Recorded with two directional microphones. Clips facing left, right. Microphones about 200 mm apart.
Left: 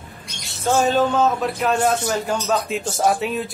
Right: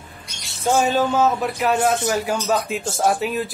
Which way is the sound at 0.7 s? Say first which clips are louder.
Left 1 dB; 5° right (ahead or behind).